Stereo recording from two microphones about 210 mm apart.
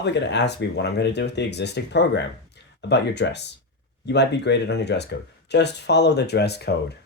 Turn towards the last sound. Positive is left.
turn(degrees=50)  # may be behind; listen again after turning